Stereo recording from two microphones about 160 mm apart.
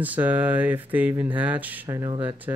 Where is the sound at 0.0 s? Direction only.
10° right (ahead or behind).